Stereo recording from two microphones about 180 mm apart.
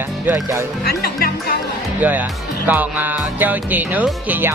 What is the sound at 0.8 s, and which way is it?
Speech, 60° left (ahead or behind).